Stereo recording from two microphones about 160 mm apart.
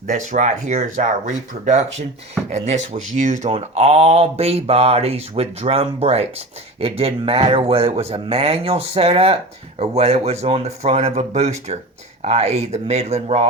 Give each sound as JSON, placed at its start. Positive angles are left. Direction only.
{"t": 0.1, "sound": "speech", "side_deg": -50}